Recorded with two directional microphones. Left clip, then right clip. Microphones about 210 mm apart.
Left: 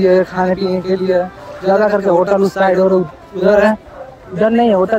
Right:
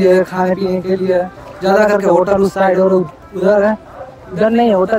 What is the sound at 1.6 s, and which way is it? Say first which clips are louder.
Speech: right 1 dB; 30° right (ahead or behind).